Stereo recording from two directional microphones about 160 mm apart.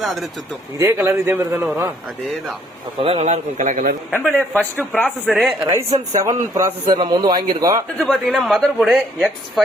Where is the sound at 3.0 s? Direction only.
40° right (ahead or behind).